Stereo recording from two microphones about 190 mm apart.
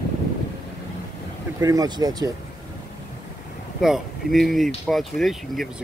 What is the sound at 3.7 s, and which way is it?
Speech, centre (ahead or behind).